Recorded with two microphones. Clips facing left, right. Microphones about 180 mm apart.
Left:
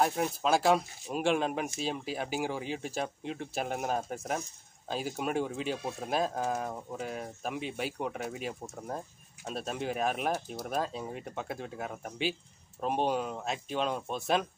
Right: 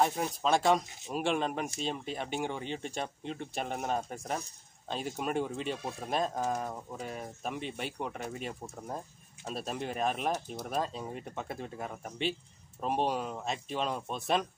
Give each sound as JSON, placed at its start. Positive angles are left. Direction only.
{"t": 0.0, "sound": "speech", "side_deg": 0}